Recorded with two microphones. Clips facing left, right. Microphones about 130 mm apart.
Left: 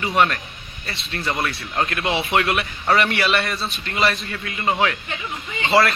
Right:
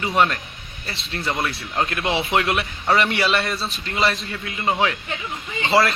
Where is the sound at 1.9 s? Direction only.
25° right (ahead or behind).